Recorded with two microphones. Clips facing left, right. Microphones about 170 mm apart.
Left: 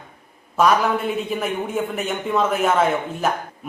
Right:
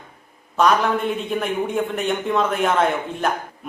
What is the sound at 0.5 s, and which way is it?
A man's voice, 5° left (ahead or behind).